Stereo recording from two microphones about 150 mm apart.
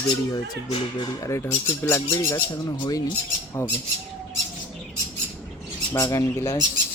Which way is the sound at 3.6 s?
15° left (ahead or behind).